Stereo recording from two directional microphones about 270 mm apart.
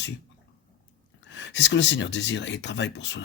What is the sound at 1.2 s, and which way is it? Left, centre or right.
Speech, left.